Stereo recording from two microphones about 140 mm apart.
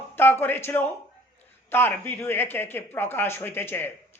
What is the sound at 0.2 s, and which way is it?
Speech, 15° left (ahead or behind).